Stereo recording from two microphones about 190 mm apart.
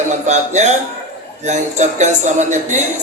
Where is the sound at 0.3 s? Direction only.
35° right (ahead or behind).